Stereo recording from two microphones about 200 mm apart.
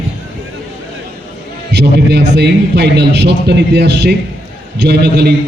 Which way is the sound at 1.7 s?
60° right (ahead or behind).